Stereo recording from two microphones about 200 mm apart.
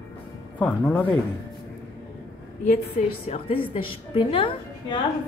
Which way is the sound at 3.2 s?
25° left (ahead or behind).